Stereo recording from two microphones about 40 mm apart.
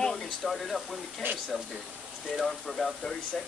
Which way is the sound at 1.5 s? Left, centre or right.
Centre.